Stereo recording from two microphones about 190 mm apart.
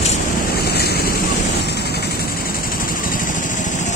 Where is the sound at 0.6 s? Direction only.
55° left (ahead or behind).